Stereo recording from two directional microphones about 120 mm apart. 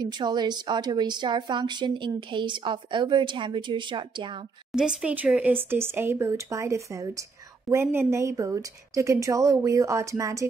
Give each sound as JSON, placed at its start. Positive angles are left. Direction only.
{"t": 0.0, "sound": "a woman's voice", "side_deg": -35}
{"t": 4.7, "sound": "speech", "side_deg": -10}